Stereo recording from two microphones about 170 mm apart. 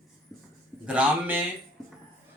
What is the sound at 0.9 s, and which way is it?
Mantra, 10° right (ahead or behind).